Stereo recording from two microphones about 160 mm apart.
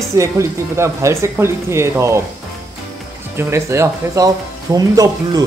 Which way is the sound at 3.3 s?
15° right (ahead or behind).